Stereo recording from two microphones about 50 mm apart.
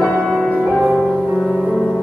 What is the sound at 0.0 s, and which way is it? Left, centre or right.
Music, centre.